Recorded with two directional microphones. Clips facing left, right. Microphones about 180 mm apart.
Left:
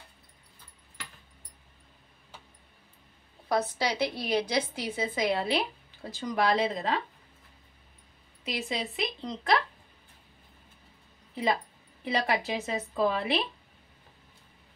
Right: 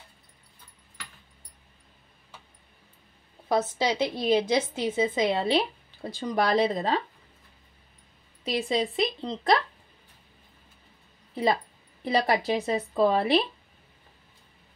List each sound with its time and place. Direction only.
3.4 s a woman's voice: 20° right (ahead or behind); by 7.0 s 35° right (ahead or behind)
8.5 s a woman's voice: 30° right (ahead or behind)
12.0 s a woman's voice: 35° right (ahead or behind)